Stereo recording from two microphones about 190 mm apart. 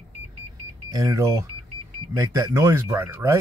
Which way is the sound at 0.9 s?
15° right (ahead or behind).